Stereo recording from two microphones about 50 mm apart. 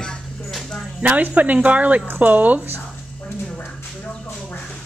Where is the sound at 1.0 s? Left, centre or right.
Right.